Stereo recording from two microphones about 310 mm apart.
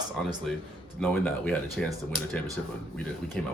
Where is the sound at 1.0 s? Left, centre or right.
Centre.